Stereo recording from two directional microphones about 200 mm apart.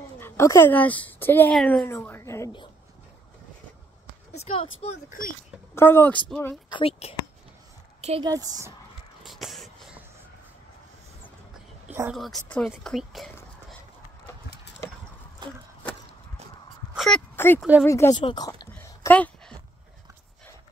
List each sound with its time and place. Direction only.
0.2 s speech: 10° left (ahead or behind)
4.3 s speech: 30° left (ahead or behind)
5.8 s speech: 10° left (ahead or behind)
6.7 s speech: 30° left (ahead or behind)
8.0 s a woman's voice: 30° right (ahead or behind)
8.3 s speech: 15° right (ahead or behind)
9.2 s a sound: centre (ahead or behind)
12.1 s speech: centre (ahead or behind)
16.9 s a sound: 5° left (ahead or behind)
17.8 s speech: 15° left (ahead or behind)
18.1 s speech: 25° left (ahead or behind)
18.7 s a sound: 10° left (ahead or behind)